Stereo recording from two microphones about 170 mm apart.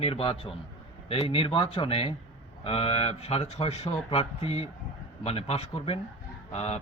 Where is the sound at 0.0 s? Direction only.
35° left (ahead or behind).